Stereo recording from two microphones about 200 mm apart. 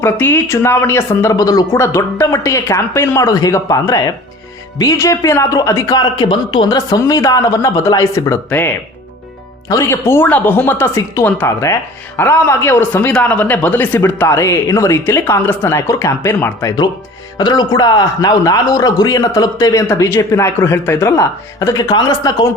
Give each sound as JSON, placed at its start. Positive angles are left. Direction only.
{"t": 0.0, "sound": "speech", "side_deg": 10}